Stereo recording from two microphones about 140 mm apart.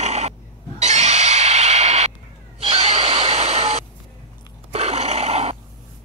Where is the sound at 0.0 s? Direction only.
50° right (ahead or behind).